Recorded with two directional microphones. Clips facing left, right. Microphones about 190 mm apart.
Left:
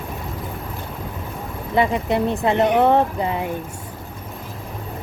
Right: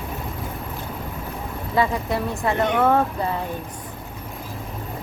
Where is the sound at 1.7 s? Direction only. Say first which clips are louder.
Left 3 dB; 20° left (ahead or behind).